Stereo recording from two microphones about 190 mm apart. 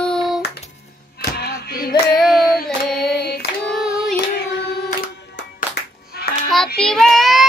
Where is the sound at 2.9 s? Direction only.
5° left (ahead or behind).